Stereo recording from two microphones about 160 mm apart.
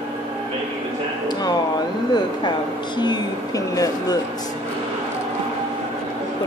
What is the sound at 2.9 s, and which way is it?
Speech, 25° left (ahead or behind).